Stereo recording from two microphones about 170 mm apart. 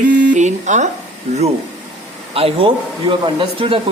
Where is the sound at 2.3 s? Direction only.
35° right (ahead or behind).